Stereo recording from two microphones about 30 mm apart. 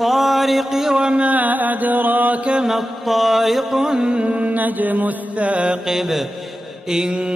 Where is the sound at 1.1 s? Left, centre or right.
Right.